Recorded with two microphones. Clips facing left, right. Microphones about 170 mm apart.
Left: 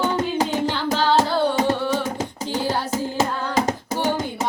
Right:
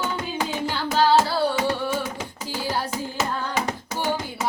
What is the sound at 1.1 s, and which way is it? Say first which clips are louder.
Hands: left 1 dB; 40° left (ahead or behind).